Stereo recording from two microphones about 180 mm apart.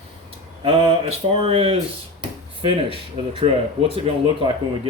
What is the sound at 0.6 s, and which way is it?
Speech, 35° right (ahead or behind).